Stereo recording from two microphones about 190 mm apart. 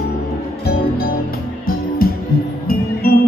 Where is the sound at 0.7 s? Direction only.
55° left (ahead or behind).